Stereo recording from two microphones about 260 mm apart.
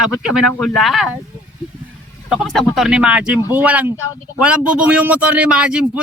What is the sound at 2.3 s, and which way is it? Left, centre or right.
A man's voice, centre.